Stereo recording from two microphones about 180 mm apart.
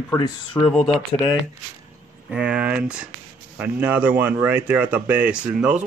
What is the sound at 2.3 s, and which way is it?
Speech, 5° right (ahead or behind).